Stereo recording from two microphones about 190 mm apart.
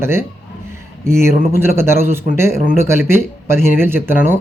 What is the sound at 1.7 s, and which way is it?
Speech, 15° right (ahead or behind).